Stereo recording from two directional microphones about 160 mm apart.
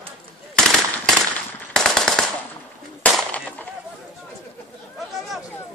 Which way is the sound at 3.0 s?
10° left (ahead or behind).